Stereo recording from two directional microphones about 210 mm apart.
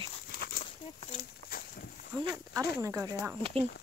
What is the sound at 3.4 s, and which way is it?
Speech, 25° right (ahead or behind).